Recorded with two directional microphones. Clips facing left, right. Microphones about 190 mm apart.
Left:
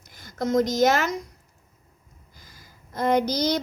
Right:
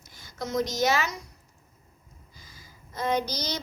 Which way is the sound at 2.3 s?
50° left (ahead or behind).